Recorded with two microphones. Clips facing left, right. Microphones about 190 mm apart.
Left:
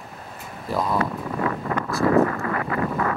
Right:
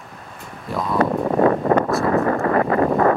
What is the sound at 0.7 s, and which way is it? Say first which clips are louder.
Speech: even; centre (ahead or behind).